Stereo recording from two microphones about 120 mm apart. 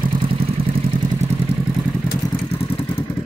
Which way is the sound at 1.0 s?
70° right (ahead or behind).